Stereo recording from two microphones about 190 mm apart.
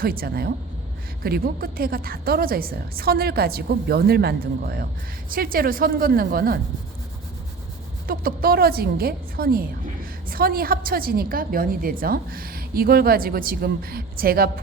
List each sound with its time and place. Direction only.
0.0 s a woman's voice: 50° right (ahead or behind)
8.0 s a woman's voice: 50° right (ahead or behind)